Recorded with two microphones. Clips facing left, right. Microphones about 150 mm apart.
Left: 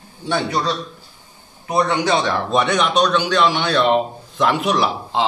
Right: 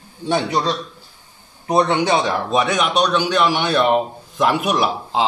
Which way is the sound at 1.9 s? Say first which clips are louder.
Right 1 dB; 15° right (ahead or behind).